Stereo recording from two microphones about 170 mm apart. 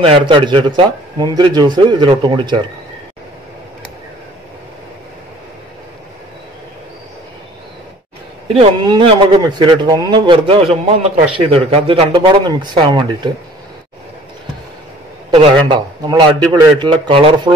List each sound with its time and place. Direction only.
0.0 s a man's voice: 30° right (ahead or behind)
8.5 s a man's voice: 30° right (ahead or behind)
15.3 s a man's voice: 30° right (ahead or behind)